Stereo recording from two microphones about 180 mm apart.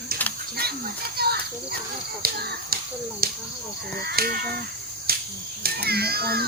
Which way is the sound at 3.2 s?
55° right (ahead or behind).